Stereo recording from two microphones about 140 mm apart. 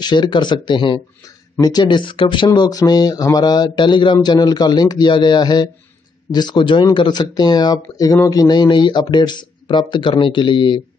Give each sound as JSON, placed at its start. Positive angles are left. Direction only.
{"t": 0.0, "sound": "speech", "side_deg": 30}